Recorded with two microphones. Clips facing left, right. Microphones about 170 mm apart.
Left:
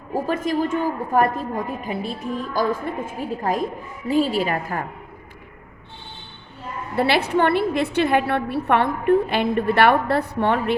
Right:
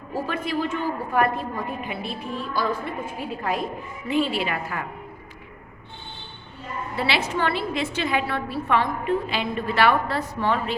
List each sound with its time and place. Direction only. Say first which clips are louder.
0.1 s a woman's voice: left 5 dB; 45° left (ahead or behind)
6.9 s a woman's voice: left 6 dB; 55° left (ahead or behind)